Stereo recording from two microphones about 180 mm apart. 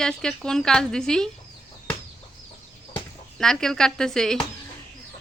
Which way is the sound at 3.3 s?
5° left (ahead or behind).